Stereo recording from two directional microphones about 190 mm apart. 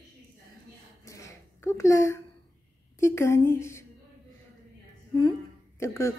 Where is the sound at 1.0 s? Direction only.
15° left (ahead or behind).